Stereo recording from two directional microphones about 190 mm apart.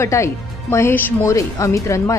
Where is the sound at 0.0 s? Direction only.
15° left (ahead or behind).